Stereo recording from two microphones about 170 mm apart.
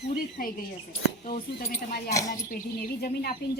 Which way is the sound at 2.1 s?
20° left (ahead or behind).